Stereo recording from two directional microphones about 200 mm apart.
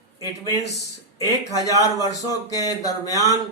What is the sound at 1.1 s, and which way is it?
Speech, 15° left (ahead or behind).